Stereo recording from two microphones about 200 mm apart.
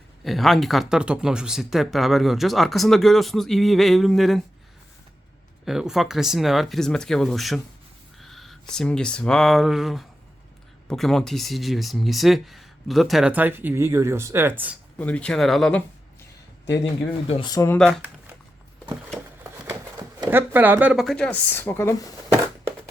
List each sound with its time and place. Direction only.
0.3 s speech: centre (ahead or behind)
5.6 s speech: centre (ahead or behind)
14.9 s speech: 5° left (ahead or behind)
17.2 s speech: 30° left (ahead or behind)
17.5 s speech: 15° left (ahead or behind)
17.7 s speech: 5° left (ahead or behind)
19.6 s a sound: 20° right (ahead or behind)
20.5 s speech: 10° right (ahead or behind); by 22.1 s 15° left (ahead or behind)